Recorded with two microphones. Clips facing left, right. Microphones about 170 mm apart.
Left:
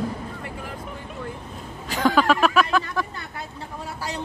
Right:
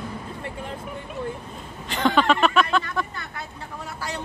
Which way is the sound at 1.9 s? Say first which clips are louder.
Left 1 dB; 5° left (ahead or behind).